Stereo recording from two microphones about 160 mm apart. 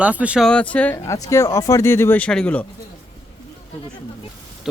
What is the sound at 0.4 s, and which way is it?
Speech, 5° left (ahead or behind).